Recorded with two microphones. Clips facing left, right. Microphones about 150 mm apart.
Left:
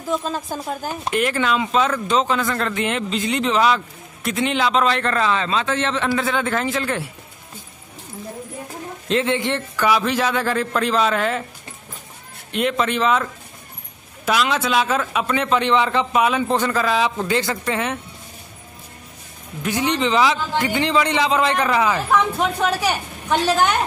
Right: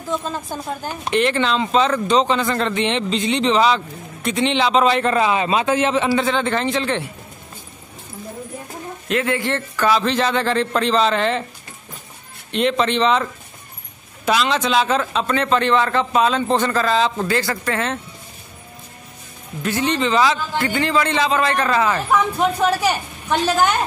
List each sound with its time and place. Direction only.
0.1 s speech: centre (ahead or behind)
9.0 s a man's voice: 25° left (ahead or behind); by 11.4 s 5° left (ahead or behind)
12.4 s a man's voice: 5° left (ahead or behind)
19.6 s a man's voice: 15° left (ahead or behind)
22.1 s speech: 5° right (ahead or behind)